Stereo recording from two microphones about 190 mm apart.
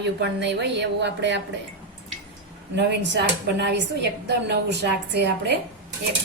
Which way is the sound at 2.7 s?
65° right (ahead or behind).